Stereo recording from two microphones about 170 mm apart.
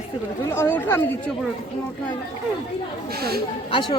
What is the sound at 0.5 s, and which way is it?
Speech, 15° left (ahead or behind).